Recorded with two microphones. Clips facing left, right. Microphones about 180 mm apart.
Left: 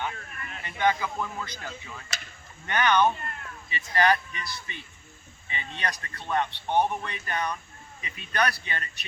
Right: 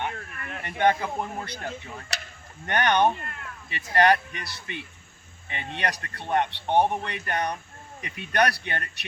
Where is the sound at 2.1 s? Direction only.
70° right (ahead or behind).